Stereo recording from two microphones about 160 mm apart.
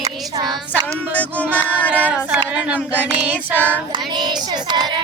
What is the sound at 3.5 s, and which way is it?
Child singing, 10° left (ahead or behind).